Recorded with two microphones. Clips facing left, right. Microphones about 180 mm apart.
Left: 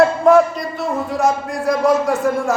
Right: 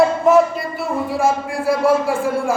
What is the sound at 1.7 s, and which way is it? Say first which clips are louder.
Speech: left 1 dB; 5° right (ahead or behind).